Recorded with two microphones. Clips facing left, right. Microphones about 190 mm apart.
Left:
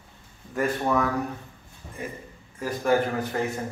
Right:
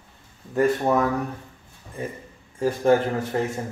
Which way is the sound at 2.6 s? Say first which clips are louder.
Right 6 dB; 25° right (ahead or behind).